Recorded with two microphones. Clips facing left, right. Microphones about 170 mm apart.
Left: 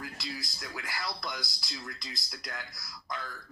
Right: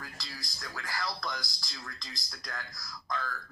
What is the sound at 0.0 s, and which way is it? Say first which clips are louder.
Speech: left 6 dB; 20° left (ahead or behind).